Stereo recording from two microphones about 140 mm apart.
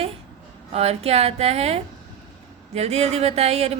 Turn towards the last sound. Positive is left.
turn(degrees=-50)  # may be behind; listen again after turning